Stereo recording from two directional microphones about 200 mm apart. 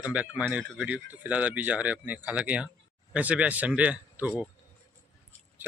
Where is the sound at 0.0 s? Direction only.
5° right (ahead or behind).